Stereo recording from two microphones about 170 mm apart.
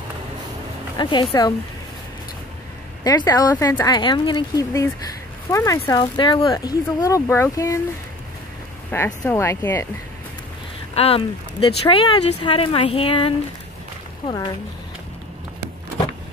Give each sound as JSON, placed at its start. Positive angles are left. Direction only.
{"t": 1.0, "sound": "speech", "side_deg": 25}
{"t": 3.0, "sound": "speech", "side_deg": 20}
{"t": 8.9, "sound": "speech", "side_deg": 15}
{"t": 11.0, "sound": "speech", "side_deg": 35}